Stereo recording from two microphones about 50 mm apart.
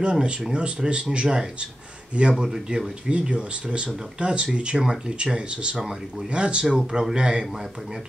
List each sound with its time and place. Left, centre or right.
0.0 s speech: centre